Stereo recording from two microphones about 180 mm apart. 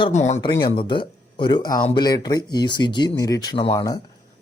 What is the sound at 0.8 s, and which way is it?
Speech, 25° left (ahead or behind).